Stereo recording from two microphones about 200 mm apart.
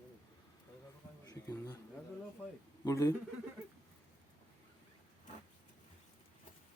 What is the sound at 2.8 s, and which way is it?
Speech, 15° left (ahead or behind).